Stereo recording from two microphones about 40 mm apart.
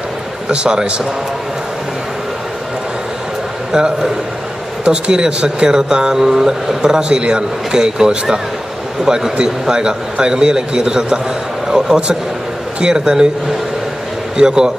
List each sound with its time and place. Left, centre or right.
0.5 s a man's voice: right
3.7 s a man's voice: centre
14.3 s a man's voice: centre